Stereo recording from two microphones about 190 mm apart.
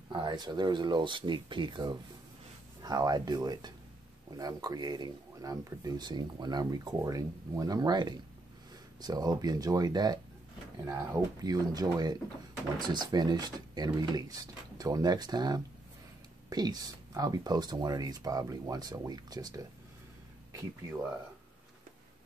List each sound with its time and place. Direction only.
0.1 s speech: 25° right (ahead or behind)